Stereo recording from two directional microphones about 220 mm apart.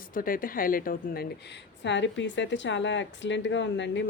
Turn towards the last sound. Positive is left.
turn(degrees=55)  # may be behind; listen again after turning